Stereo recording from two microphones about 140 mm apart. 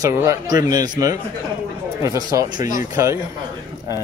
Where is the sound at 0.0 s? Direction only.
25° right (ahead or behind).